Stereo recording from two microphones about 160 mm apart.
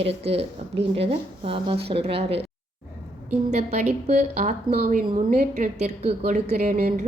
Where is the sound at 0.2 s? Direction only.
40° right (ahead or behind).